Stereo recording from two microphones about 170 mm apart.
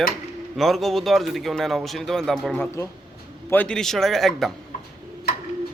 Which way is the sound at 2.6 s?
15° left (ahead or behind).